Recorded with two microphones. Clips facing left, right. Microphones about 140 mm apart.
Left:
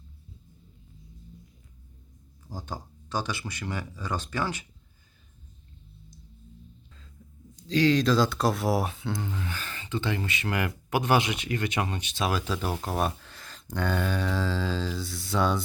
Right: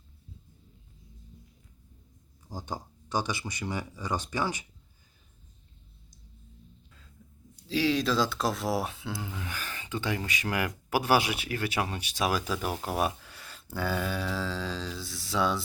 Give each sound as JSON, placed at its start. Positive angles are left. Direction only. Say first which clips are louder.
{"t": 2.5, "sound": "speech", "louder": "even", "side_deg": -15}
{"t": 7.5, "sound": "speech", "louder": "left 4 dB", "side_deg": -5}